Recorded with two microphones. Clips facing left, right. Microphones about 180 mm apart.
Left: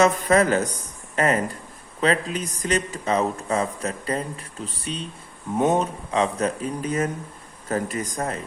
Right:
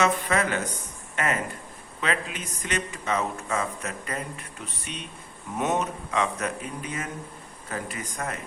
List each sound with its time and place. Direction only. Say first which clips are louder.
0.0 s a man's voice: left 6 dB; 40° left (ahead or behind)